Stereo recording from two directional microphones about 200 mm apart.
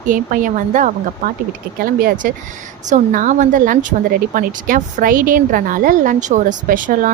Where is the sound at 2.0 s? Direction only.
40° right (ahead or behind).